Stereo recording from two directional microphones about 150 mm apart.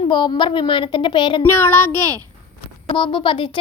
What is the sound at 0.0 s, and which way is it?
Speech, 30° left (ahead or behind).